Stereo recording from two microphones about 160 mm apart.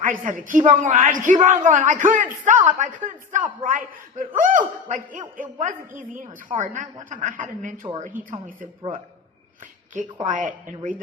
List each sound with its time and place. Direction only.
0.0 s a woman's voice: 55° right (ahead or behind)
10.2 s a woman's voice: 50° right (ahead or behind)